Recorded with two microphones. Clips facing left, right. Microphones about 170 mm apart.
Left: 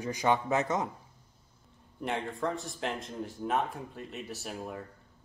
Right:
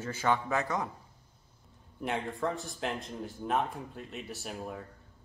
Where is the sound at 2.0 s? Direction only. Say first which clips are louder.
Even; centre (ahead or behind).